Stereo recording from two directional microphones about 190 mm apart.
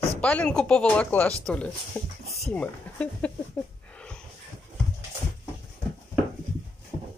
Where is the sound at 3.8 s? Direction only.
5° left (ahead or behind).